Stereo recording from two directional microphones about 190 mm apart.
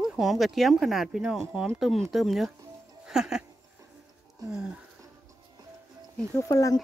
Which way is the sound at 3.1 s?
5° right (ahead or behind).